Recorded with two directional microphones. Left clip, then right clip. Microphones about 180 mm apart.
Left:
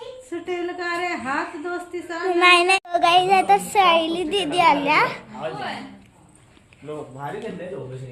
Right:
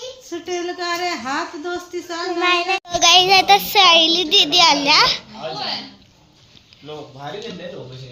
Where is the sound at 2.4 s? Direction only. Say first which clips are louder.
Left 3 dB; 25° left (ahead or behind).